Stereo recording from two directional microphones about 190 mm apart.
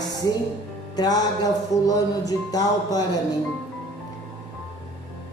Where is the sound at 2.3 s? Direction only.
20° left (ahead or behind).